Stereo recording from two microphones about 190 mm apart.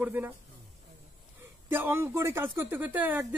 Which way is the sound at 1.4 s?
10° right (ahead or behind).